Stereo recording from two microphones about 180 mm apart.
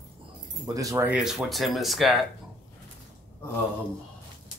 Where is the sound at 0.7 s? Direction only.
15° right (ahead or behind); by 2.2 s centre (ahead or behind).